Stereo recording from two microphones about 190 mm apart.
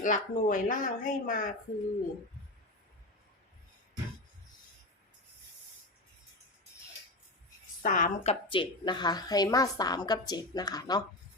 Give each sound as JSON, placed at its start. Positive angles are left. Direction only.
{"t": 0.0, "sound": "speech", "side_deg": 45}
{"t": 7.8, "sound": "a woman's voice", "side_deg": 40}